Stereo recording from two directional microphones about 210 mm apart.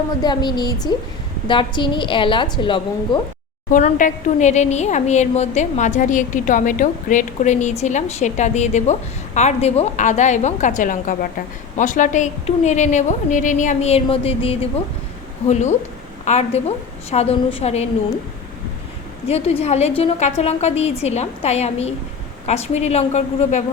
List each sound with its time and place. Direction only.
0.2 s a woman's voice: 20° left (ahead or behind)
3.7 s a woman's voice: 35° left (ahead or behind)
19.3 s a woman's voice: 30° left (ahead or behind)